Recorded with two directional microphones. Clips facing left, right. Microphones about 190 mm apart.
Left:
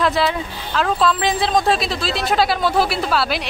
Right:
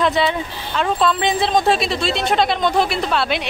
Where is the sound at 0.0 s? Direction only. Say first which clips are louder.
Right 1 dB; centre (ahead or behind).